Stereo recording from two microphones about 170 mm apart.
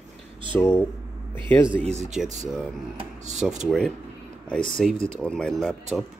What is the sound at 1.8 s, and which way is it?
Speech, 40° right (ahead or behind).